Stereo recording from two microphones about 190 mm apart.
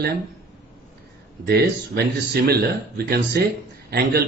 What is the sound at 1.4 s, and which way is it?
Speech, 55° right (ahead or behind).